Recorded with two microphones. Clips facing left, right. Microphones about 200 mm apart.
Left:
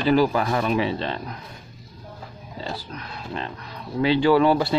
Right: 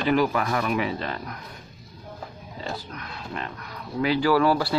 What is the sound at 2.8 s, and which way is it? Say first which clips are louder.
Speech: left 2 dB; 30° left (ahead or behind).